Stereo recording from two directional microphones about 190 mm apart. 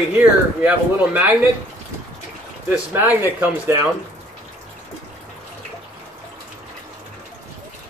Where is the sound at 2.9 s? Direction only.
10° right (ahead or behind).